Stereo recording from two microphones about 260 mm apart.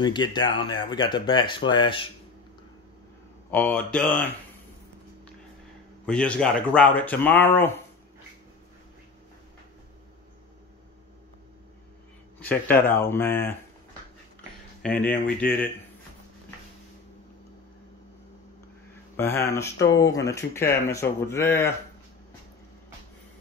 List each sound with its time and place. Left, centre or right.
0.0 s speech: centre
3.5 s speech: centre
6.0 s speech: centre
12.4 s speech: centre
14.8 s speech: centre
19.1 s speech: centre